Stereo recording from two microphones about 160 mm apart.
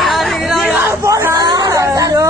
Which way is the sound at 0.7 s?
15° right (ahead or behind).